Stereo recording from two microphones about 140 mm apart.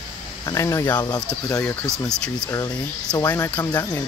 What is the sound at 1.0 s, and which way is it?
Speech, 30° left (ahead or behind).